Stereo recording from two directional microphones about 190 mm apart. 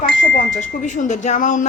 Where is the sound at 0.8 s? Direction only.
40° left (ahead or behind).